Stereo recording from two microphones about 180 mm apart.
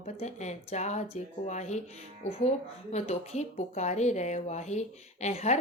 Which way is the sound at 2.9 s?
40° left (ahead or behind).